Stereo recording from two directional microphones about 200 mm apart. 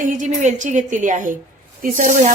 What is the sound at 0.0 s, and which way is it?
A woman's voice, 40° right (ahead or behind).